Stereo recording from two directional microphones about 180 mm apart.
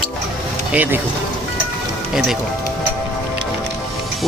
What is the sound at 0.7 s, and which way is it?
Speech, 10° right (ahead or behind).